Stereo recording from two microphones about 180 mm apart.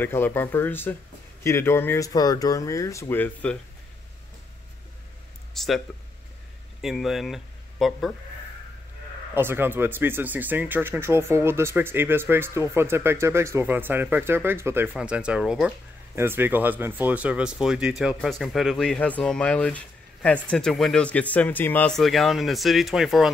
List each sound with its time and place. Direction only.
0.0 s speech: 10° left (ahead or behind)
5.5 s speech: centre (ahead or behind)
6.8 s speech: centre (ahead or behind)
9.3 s speech: 10° right (ahead or behind)